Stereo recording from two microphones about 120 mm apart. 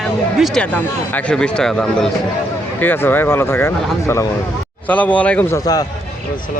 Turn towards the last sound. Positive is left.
turn(degrees=30)  # may be behind; listen again after turning